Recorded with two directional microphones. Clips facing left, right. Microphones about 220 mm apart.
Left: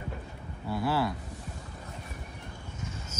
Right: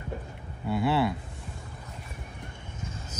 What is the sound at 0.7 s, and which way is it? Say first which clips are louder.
Speech: right 3 dB; 25° right (ahead or behind).